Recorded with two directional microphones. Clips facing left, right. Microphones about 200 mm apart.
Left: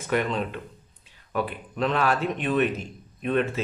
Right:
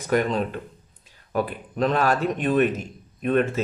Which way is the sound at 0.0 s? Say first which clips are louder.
Right 3 dB; 40° right (ahead or behind).